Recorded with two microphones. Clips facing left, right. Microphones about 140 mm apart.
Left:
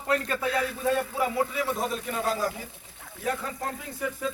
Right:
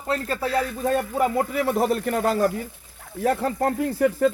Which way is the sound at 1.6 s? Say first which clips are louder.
Right 8 dB; 65° right (ahead or behind).